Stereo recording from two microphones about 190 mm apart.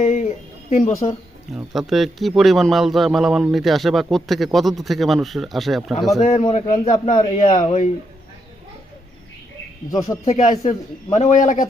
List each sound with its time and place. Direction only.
0.0 s a man's voice: 35° left (ahead or behind)
1.5 s speech: centre (ahead or behind)
6.1 s a man's voice: 35° left (ahead or behind)
6.8 s a man's voice: 40° left (ahead or behind)
10.2 s a man's voice: 35° left (ahead or behind)